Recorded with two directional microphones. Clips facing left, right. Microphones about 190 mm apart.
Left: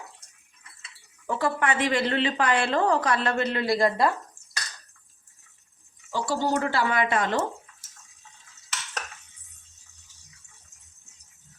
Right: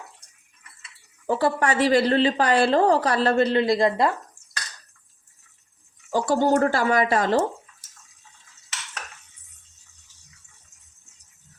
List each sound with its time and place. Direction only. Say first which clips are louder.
1.3 s a woman's voice: right 4 dB; 35° right (ahead or behind)
6.1 s speech: right 6 dB; 45° right (ahead or behind)